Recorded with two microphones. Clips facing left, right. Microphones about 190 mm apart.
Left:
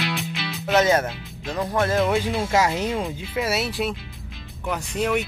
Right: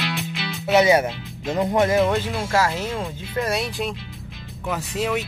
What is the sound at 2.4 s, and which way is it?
Speech, 15° left (ahead or behind).